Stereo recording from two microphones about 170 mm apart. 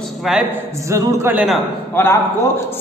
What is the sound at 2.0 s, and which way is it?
Speech, 10° left (ahead or behind).